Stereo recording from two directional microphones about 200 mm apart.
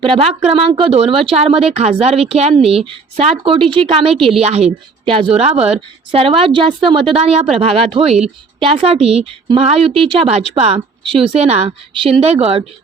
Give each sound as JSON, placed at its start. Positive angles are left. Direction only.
{"t": 0.0, "sound": "a woman's voice", "side_deg": -25}